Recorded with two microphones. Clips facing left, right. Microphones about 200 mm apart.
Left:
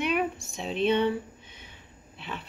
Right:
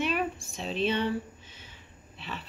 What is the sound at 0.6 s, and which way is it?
Speech, 60° left (ahead or behind).